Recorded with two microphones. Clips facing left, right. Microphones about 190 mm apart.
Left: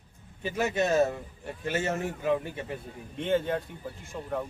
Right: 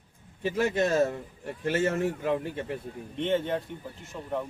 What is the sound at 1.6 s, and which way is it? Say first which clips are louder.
Speech: right 4 dB; 55° right (ahead or behind).